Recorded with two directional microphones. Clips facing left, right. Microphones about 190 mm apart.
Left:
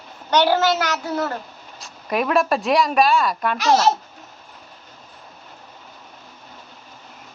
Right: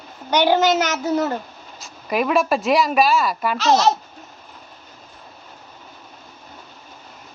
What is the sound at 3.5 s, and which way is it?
Speech, 10° left (ahead or behind).